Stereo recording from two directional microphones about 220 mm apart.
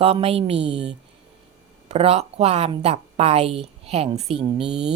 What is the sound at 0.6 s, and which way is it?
Mantra, 50° right (ahead or behind).